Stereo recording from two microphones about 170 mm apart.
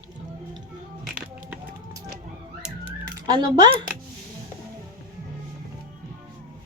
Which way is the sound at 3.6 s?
25° right (ahead or behind).